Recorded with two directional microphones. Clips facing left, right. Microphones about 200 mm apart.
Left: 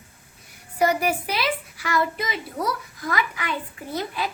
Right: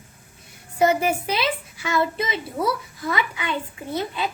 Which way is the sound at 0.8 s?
25° right (ahead or behind).